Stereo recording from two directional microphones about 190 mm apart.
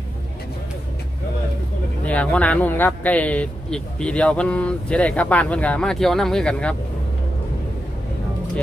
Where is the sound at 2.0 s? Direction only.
5° left (ahead or behind).